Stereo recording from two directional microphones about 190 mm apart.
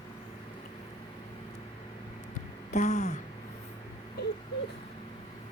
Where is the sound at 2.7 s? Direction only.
35° left (ahead or behind).